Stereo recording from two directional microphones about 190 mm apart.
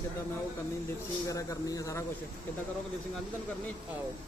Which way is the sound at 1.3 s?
15° left (ahead or behind).